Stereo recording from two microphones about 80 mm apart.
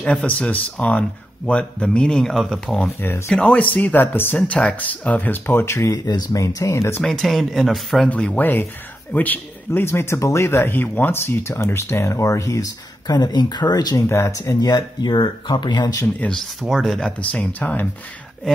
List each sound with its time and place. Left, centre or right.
0.0 s speech: centre
3.0 s speech: left
3.3 s speech: centre
4.4 s speech: centre; by 5.9 s left
6.0 s speech: left
7.0 s speech: centre
8.1 s speech: centre
9.7 s speech: left
13.0 s speech: left
13.9 s speech: left
14.4 s speech: left
16.2 s speech: centre
16.6 s speech: centre
17.0 s speech: centre